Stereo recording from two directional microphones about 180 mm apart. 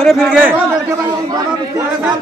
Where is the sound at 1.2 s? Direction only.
20° right (ahead or behind).